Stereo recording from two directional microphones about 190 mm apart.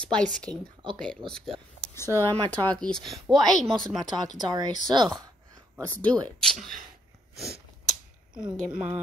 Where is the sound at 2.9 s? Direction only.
Centre (ahead or behind).